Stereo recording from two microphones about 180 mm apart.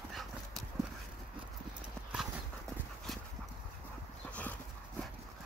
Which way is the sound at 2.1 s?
Centre (ahead or behind).